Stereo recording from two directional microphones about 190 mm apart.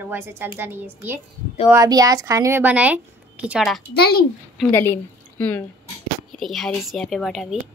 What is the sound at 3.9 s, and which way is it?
Speech, 55° left (ahead or behind).